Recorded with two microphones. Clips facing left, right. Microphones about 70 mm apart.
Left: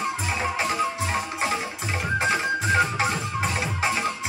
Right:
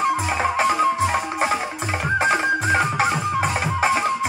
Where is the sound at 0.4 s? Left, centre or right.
Right.